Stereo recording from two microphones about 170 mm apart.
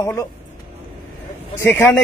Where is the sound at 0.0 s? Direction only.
15° left (ahead or behind).